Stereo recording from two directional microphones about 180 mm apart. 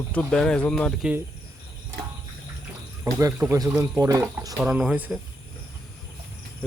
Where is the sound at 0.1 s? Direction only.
5° left (ahead or behind).